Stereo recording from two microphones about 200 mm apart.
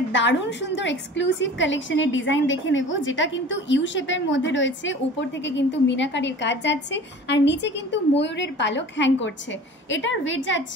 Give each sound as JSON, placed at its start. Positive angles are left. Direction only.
{"t": 0.1, "sound": "a woman's voice", "side_deg": 60}